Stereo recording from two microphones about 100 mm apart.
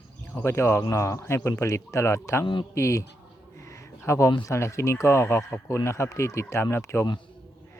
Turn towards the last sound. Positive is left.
turn(degrees=25)  # may be behind; listen again after turning